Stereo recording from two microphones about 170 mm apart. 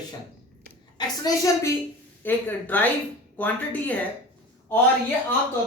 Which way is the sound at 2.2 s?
10° left (ahead or behind).